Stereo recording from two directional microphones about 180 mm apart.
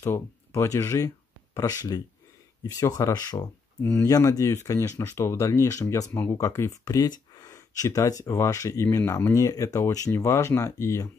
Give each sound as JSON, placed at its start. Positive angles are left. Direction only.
{"t": 0.0, "sound": "speech", "side_deg": 15}